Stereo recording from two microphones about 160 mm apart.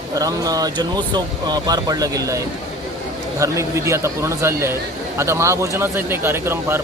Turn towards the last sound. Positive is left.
turn(degrees=-15)  # may be behind; listen again after turning